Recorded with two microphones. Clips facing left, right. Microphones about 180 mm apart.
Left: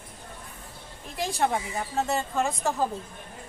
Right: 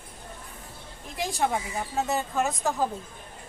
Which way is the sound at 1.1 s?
Centre (ahead or behind).